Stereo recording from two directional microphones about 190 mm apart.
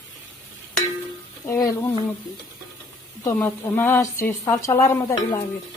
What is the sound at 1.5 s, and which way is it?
Speech, 20° left (ahead or behind).